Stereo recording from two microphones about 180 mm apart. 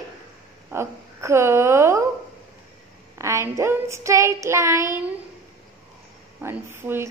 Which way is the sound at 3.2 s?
15° right (ahead or behind).